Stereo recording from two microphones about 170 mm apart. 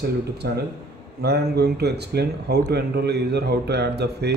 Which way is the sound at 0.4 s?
70° right (ahead or behind).